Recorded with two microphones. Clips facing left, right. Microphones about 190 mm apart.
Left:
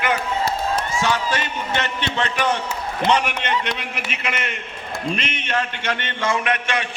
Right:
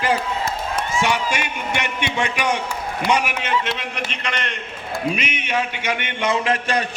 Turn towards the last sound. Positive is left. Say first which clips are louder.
# right 2 dB
turn(degrees=-30)  # may be behind; listen again after turning